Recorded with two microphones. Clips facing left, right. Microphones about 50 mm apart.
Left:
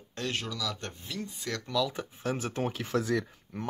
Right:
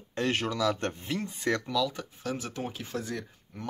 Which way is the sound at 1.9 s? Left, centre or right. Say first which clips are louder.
Left 2 dB; left.